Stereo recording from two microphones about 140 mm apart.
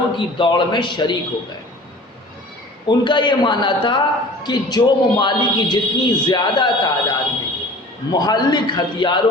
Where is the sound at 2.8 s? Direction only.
35° left (ahead or behind).